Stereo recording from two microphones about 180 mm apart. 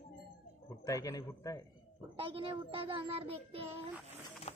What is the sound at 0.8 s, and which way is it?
Speech, 20° left (ahead or behind).